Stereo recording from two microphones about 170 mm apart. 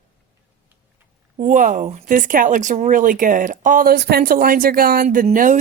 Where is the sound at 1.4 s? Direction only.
50° right (ahead or behind).